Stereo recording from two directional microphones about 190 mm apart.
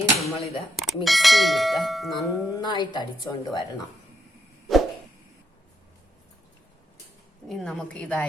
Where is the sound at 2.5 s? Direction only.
25° left (ahead or behind).